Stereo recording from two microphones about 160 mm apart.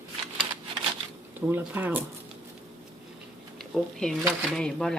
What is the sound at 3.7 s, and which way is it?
Speech, 5° left (ahead or behind).